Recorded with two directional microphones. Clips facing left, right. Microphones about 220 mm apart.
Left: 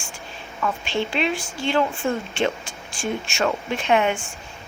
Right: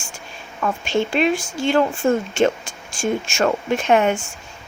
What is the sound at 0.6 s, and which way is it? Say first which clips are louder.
A woman's voice: right 4 dB; 45° right (ahead or behind).